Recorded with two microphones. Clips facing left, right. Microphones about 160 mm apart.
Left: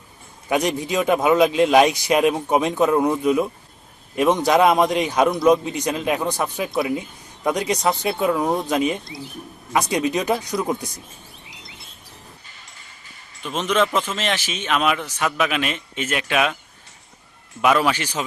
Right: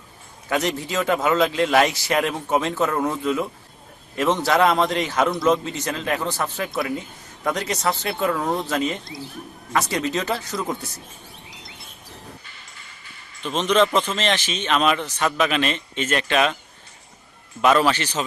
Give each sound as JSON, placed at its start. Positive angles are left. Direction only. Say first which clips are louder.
{"t": 0.4, "sound": "speech", "louder": "left 2 dB", "side_deg": 15}
{"t": 13.4, "sound": "speech", "louder": "right 2 dB", "side_deg": 10}
{"t": 17.6, "sound": "speech", "louder": "right 1 dB", "side_deg": 10}